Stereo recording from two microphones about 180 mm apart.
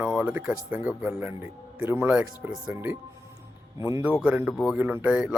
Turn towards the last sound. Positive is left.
turn(degrees=-5)  # may be behind; listen again after turning